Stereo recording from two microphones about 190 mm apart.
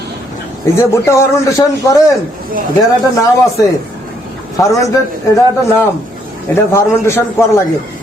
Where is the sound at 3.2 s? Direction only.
15° left (ahead or behind).